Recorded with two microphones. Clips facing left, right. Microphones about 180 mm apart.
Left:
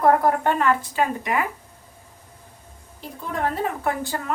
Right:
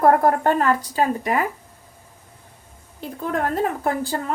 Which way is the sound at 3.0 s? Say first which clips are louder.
Right 6 dB; 60° right (ahead or behind).